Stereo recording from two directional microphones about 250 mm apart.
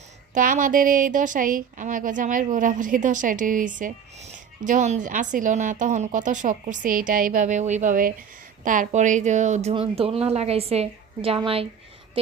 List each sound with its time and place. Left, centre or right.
0.3 s speech: right